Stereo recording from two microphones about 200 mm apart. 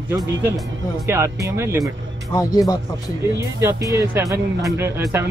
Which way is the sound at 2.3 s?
20° left (ahead or behind).